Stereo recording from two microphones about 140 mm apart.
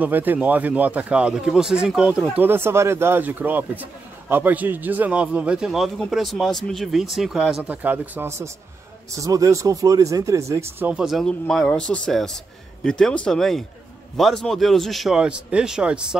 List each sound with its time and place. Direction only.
0.0 s a man's voice: 10° right (ahead or behind)